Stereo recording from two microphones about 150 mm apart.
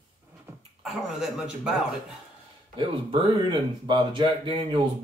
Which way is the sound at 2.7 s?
30° right (ahead or behind).